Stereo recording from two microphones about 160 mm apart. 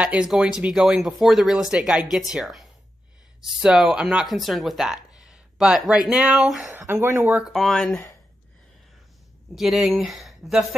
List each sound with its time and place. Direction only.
0.0 s speech: 5° right (ahead or behind)
6.8 s speech: 15° right (ahead or behind)
7.3 s speech: 5° right (ahead or behind)
9.6 s speech: centre (ahead or behind)